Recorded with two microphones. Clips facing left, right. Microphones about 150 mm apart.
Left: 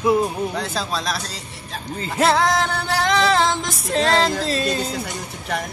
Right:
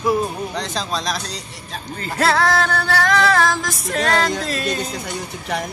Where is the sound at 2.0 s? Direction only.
20° left (ahead or behind).